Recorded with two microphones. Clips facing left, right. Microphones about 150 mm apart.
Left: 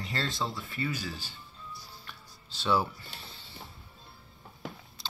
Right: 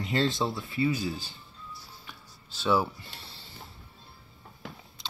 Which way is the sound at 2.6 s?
10° right (ahead or behind).